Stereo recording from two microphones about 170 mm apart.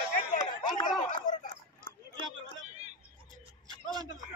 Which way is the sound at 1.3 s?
50° left (ahead or behind).